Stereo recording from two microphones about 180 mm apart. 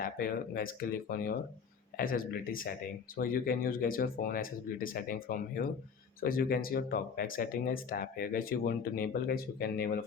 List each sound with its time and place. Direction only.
0.0 s speech: 55° left (ahead or behind)